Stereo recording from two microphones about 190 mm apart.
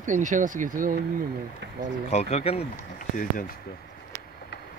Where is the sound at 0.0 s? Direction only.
40° right (ahead or behind).